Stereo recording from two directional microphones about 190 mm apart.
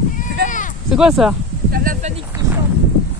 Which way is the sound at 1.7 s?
55° right (ahead or behind).